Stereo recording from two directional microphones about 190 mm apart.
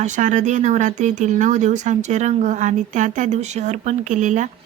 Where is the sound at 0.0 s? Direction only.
40° right (ahead or behind).